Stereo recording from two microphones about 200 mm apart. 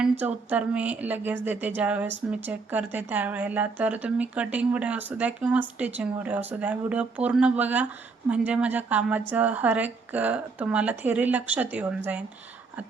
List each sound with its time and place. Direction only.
0.0 s speech: 5° right (ahead or behind)